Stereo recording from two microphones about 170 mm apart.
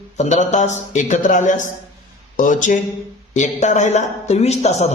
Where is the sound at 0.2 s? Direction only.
45° left (ahead or behind).